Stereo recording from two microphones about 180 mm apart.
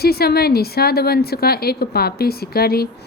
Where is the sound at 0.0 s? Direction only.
60° left (ahead or behind).